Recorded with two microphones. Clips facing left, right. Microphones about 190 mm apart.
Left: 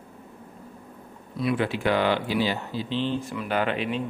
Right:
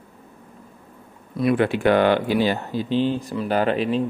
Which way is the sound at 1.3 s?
55° right (ahead or behind).